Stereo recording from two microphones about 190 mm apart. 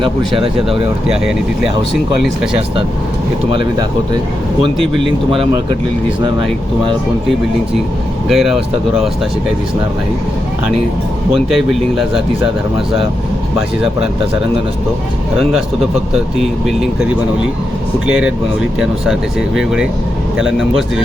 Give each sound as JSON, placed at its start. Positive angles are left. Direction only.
{"t": 0.0, "sound": "speech", "side_deg": -30}
{"t": 1.0, "sound": "speech", "side_deg": -5}
{"t": 3.5, "sound": "speech", "side_deg": -25}
{"t": 8.3, "sound": "speech", "side_deg": 0}
{"t": 11.4, "sound": "speech", "side_deg": 0}
{"t": 18.0, "sound": "speech", "side_deg": -5}